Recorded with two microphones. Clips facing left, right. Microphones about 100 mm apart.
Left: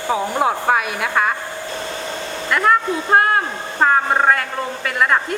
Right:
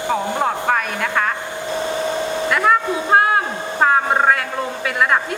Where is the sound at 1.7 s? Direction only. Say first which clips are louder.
Right 9 dB; 15° right (ahead or behind).